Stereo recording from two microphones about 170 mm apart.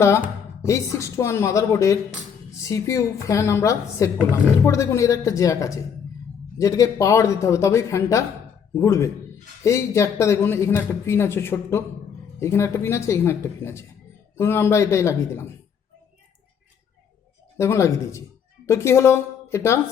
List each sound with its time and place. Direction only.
0.0 s a woman's voice: 15° left (ahead or behind)
17.6 s a woman's voice: 15° left (ahead or behind)